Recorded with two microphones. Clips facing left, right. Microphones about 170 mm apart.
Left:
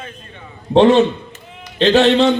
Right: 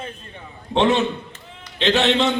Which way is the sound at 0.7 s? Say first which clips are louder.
Left 8 dB; 35° left (ahead or behind).